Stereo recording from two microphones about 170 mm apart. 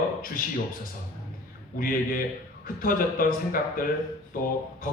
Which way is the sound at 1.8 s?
55° left (ahead or behind).